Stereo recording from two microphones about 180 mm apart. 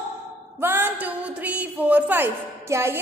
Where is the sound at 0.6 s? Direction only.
10° right (ahead or behind).